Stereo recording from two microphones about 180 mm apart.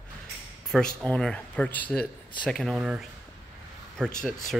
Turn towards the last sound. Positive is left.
turn(degrees=5)  # may be behind; listen again after turning